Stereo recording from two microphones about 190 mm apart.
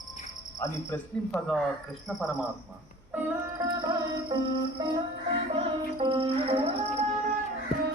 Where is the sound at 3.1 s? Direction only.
10° right (ahead or behind).